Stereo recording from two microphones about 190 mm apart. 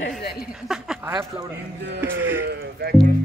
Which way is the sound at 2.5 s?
60° right (ahead or behind).